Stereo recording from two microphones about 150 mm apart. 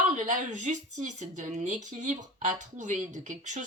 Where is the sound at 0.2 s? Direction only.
55° right (ahead or behind).